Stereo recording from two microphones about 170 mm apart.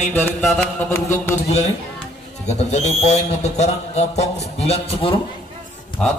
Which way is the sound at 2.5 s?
40° left (ahead or behind).